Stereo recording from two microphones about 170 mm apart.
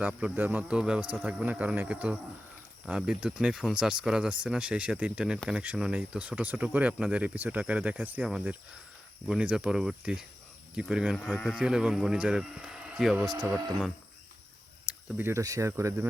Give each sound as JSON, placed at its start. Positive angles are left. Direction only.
{"t": 0.2, "sound": "speech", "side_deg": -10}
{"t": 11.2, "sound": "speech", "side_deg": 5}
{"t": 11.5, "sound": "speech", "side_deg": -5}
{"t": 14.8, "sound": "speech", "side_deg": -15}